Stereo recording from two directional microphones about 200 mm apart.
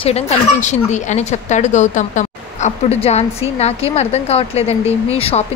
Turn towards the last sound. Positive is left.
turn(degrees=30)  # may be behind; listen again after turning